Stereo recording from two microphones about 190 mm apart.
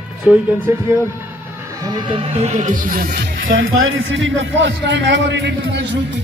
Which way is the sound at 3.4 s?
90° right.